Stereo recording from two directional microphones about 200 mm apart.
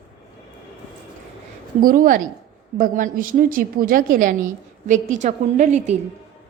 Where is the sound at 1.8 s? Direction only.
45° right (ahead or behind).